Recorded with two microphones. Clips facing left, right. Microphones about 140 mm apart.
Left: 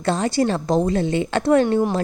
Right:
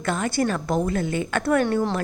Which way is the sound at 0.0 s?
30° left (ahead or behind).